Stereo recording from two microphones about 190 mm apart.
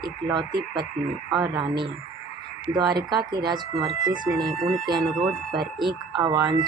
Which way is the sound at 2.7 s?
20° right (ahead or behind).